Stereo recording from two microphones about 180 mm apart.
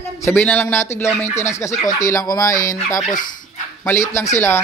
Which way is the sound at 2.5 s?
50° left (ahead or behind).